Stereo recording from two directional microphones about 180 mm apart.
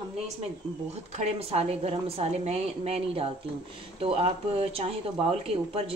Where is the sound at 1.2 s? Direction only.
35° right (ahead or behind).